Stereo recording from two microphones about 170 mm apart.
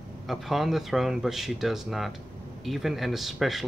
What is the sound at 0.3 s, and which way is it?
Speech, centre (ahead or behind).